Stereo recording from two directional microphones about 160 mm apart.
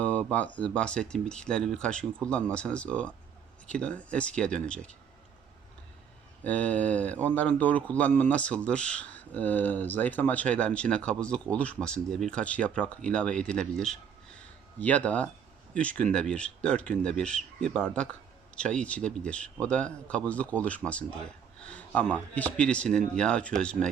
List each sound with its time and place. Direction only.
0.0 s a man's voice: 10° left (ahead or behind)
6.4 s a man's voice: 10° left (ahead or behind)